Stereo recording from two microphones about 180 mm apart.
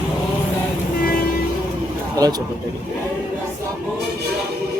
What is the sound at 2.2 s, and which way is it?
Speech, 20° right (ahead or behind).